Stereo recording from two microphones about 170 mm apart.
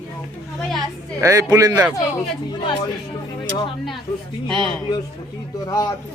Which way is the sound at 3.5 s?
30° left (ahead or behind).